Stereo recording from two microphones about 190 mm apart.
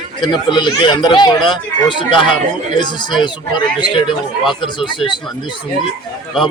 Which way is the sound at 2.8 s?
25° left (ahead or behind).